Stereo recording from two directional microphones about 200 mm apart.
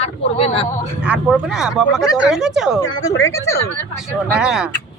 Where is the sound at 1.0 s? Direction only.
5° right (ahead or behind).